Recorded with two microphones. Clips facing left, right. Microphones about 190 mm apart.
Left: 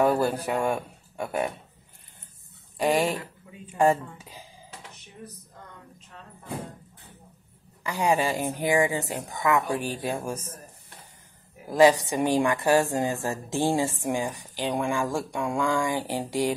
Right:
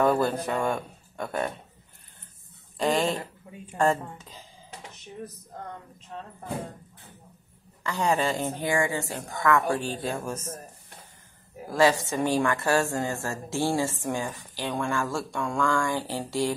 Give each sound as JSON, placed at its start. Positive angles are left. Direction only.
{"t": 0.0, "sound": "a woman's voice", "side_deg": 15}
{"t": 2.8, "sound": "a woman's voice", "side_deg": 10}
{"t": 7.8, "sound": "a woman's voice", "side_deg": 10}
{"t": 11.7, "sound": "a woman's voice", "side_deg": 15}